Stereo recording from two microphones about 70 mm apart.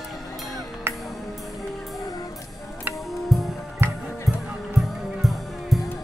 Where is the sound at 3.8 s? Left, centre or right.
Right.